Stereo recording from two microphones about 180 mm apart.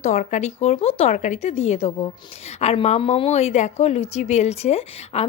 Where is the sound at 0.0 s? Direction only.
40° left (ahead or behind).